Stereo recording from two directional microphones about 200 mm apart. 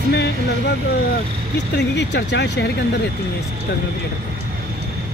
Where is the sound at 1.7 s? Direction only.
60° left (ahead or behind).